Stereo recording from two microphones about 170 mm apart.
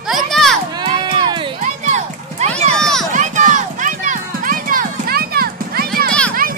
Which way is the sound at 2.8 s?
5° left (ahead or behind).